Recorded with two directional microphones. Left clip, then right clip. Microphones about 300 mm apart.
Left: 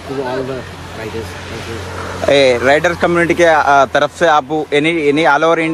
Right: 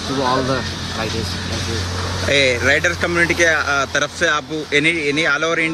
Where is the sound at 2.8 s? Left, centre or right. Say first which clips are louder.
Left 4 dB; centre.